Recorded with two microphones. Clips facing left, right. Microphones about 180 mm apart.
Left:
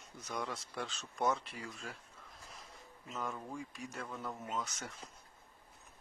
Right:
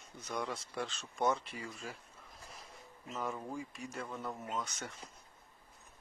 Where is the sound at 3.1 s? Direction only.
5° right (ahead or behind).